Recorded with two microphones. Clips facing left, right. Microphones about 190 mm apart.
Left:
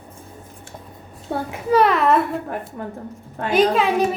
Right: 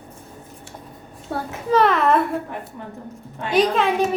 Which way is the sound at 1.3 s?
20° left (ahead or behind).